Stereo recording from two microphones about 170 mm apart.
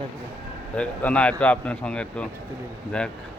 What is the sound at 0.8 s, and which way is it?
A man's voice, 5° left (ahead or behind).